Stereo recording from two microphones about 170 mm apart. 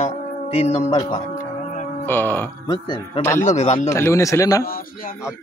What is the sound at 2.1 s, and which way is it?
Speech, 10° left (ahead or behind).